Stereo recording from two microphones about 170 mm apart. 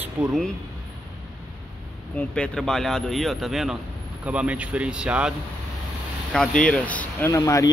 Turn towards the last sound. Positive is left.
turn(degrees=20)  # may be behind; listen again after turning